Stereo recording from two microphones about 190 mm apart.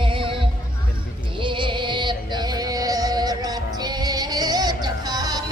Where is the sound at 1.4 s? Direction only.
25° right (ahead or behind).